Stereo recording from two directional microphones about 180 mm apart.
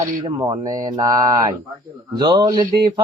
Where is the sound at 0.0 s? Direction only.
20° right (ahead or behind).